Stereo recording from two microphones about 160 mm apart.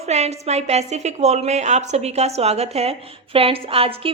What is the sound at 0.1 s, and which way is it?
A woman's voice, 40° right (ahead or behind).